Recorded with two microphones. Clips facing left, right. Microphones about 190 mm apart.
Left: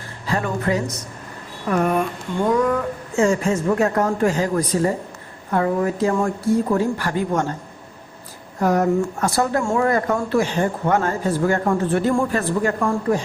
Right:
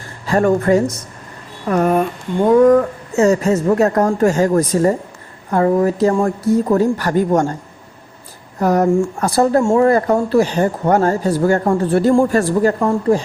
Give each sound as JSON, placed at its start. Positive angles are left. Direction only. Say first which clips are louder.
{"t": 0.3, "sound": "a woman's voice", "louder": "right 8 dB", "side_deg": -45}
{"t": 8.6, "sound": "speech", "louder": "right 4 dB", "side_deg": -40}
{"t": 12.8, "sound": "speech", "louder": "right 5 dB", "side_deg": -30}